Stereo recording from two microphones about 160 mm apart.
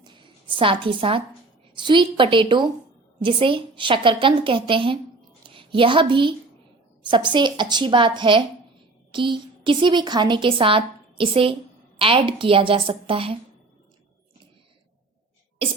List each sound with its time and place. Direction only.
0.0 s a sound: 30° right (ahead or behind)
1.7 s a woman's voice: 30° right (ahead or behind)
15.6 s a woman's voice: 35° right (ahead or behind)